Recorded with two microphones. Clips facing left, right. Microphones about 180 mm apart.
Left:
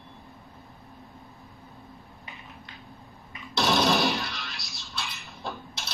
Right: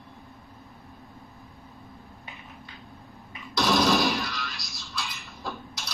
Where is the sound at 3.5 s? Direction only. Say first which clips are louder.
Right 1 dB; 25° left (ahead or behind).